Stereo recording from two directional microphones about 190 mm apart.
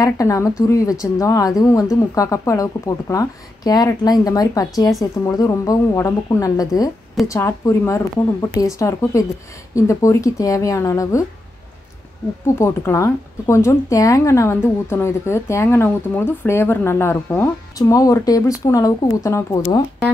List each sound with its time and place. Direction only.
0.0 s speech: 15° left (ahead or behind)
12.5 s speech: 15° left (ahead or behind)